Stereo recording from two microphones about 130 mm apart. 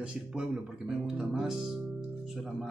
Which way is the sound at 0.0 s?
5° right (ahead or behind).